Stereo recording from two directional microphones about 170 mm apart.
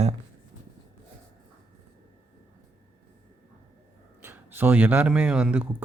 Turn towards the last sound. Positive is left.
turn(degrees=-5)  # may be behind; listen again after turning